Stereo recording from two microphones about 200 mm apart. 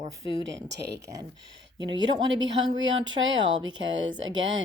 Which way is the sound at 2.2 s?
70° right (ahead or behind).